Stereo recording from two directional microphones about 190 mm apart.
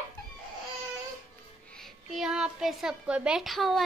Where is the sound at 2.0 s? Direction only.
Centre (ahead or behind).